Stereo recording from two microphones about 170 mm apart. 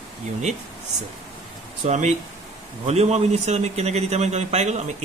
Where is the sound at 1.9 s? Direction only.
45° right (ahead or behind).